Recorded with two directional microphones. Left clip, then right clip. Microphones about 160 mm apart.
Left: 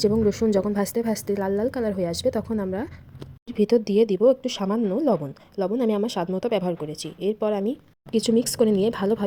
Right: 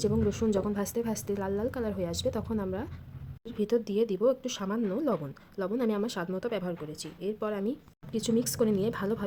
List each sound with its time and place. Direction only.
0.0 s a woman's voice: 30° left (ahead or behind)